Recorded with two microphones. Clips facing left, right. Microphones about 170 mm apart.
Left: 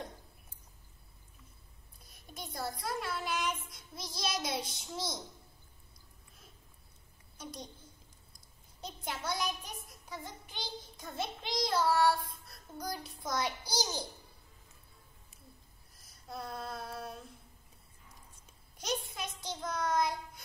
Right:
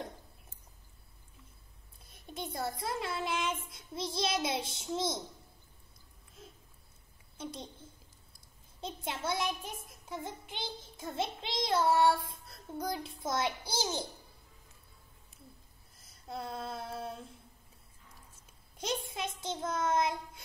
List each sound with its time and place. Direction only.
2.0 s a child's voice: 25° right (ahead or behind)
3.7 s child singing: 25° right (ahead or behind)
7.3 s child singing: 25° right (ahead or behind)
8.8 s child singing: 25° right (ahead or behind)
16.0 s female singing: 25° right (ahead or behind)
18.8 s child singing: 25° right (ahead or behind)